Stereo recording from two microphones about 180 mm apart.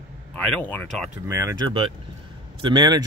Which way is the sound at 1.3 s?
15° right (ahead or behind).